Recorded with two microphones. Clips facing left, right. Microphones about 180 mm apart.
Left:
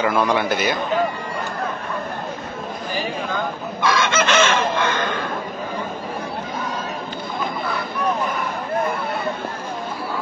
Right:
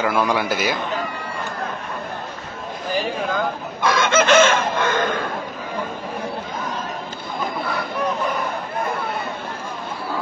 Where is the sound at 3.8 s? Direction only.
50° right (ahead or behind).